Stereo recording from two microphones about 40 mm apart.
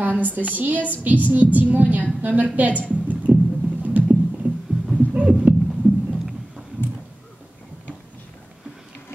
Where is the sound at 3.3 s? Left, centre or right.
Right.